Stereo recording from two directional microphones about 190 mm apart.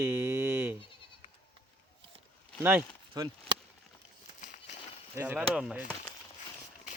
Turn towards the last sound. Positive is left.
turn(degrees=-5)  # may be behind; listen again after turning